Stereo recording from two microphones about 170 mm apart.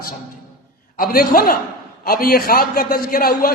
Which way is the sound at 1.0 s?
60° left (ahead or behind).